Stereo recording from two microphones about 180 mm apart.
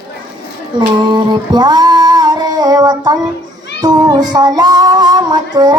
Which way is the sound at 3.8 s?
20° right (ahead or behind).